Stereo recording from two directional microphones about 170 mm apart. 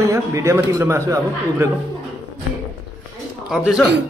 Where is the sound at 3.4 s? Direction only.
5° right (ahead or behind).